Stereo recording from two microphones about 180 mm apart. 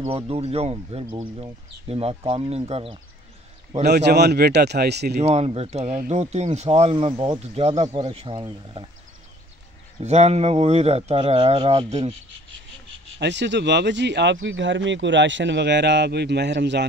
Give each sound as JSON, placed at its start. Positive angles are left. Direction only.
{"t": 0.0, "sound": "speech", "side_deg": -35}
{"t": 3.8, "sound": "speech", "side_deg": -65}
{"t": 5.1, "sound": "speech", "side_deg": -35}
{"t": 10.0, "sound": "speech", "side_deg": -35}
{"t": 13.2, "sound": "speech", "side_deg": -80}